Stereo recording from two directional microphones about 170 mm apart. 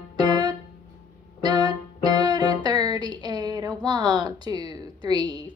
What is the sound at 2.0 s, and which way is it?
Music, 25° right (ahead or behind).